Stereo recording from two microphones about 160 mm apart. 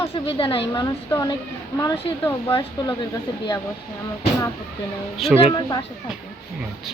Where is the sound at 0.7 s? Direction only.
20° left (ahead or behind).